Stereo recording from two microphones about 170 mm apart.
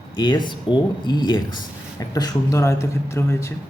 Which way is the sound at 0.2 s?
25° left (ahead or behind).